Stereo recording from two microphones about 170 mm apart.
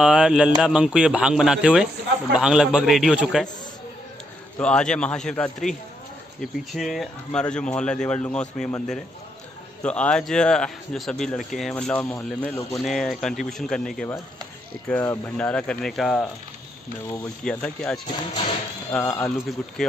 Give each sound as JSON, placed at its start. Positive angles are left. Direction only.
{"t": 0.0, "sound": "speech", "side_deg": -5}
{"t": 4.6, "sound": "speech", "side_deg": 5}
{"t": 17.4, "sound": "speech", "side_deg": 5}
{"t": 18.0, "sound": "speech", "side_deg": 30}
{"t": 18.9, "sound": "speech", "side_deg": 10}